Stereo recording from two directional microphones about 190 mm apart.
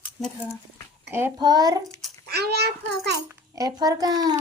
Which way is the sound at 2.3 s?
55° right (ahead or behind).